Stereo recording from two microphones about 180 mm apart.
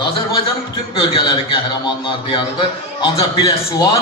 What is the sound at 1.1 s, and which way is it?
A man's voice, 30° left (ahead or behind).